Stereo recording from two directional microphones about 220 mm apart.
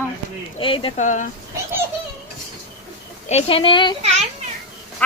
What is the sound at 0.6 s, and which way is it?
Speech, 25° left (ahead or behind).